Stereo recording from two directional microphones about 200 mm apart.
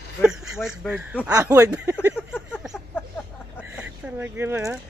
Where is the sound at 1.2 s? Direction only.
15° right (ahead or behind).